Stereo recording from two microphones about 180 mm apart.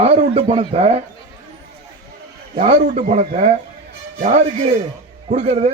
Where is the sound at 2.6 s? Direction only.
40° right (ahead or behind).